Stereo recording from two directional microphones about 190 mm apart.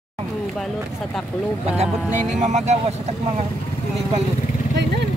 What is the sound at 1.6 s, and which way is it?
Speech, 35° right (ahead or behind).